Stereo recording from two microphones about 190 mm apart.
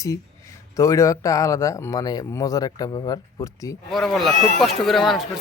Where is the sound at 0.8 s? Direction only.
15° left (ahead or behind).